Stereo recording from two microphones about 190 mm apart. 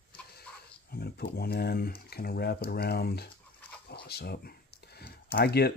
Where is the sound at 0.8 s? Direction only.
55° left (ahead or behind).